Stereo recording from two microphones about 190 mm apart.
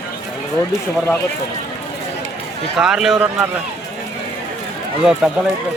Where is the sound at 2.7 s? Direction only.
5° right (ahead or behind).